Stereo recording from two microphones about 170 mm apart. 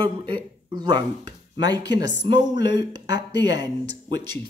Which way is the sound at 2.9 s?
80° left.